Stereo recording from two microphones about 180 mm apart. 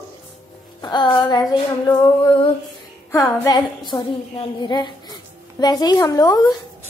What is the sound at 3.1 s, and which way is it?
Speech, 15° left (ahead or behind).